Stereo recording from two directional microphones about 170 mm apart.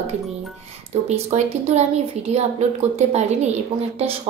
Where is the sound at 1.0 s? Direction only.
40° right (ahead or behind).